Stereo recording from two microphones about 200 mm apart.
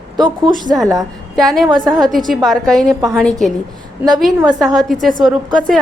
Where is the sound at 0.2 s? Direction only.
20° right (ahead or behind).